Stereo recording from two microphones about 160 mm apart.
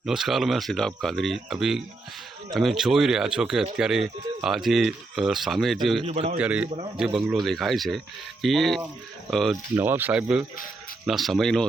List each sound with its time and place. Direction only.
0.0 s speech: centre (ahead or behind)
6.1 s speech: 40° right (ahead or behind)
6.3 s speech: 5° right (ahead or behind)
9.7 s speech: 10° right (ahead or behind)